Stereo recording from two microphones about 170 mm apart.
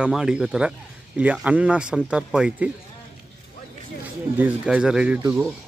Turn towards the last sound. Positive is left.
turn(degrees=-10)  # may be behind; listen again after turning